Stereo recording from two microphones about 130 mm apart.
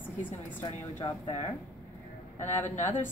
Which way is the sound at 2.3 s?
15° left (ahead or behind).